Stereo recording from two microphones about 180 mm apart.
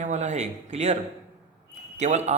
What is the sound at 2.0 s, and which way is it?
Speech, 40° right (ahead or behind).